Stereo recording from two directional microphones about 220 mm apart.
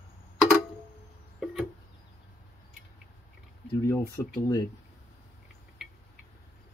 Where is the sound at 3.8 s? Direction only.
15° left (ahead or behind).